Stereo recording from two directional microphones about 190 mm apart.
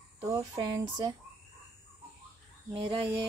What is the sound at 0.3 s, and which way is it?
Speech, 20° right (ahead or behind).